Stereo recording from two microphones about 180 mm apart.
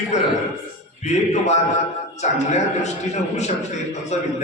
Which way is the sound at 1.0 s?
40° left (ahead or behind).